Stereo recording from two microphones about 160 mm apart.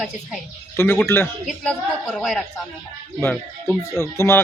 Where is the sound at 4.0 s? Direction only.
15° left (ahead or behind).